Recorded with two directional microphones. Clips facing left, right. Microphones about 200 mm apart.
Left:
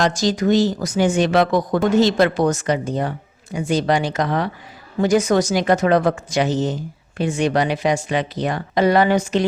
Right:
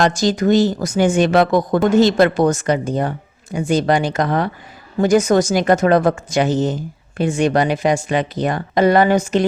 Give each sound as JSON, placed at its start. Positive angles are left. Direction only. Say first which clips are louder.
{"t": 0.0, "sound": "speech", "louder": "right 2 dB", "side_deg": -50}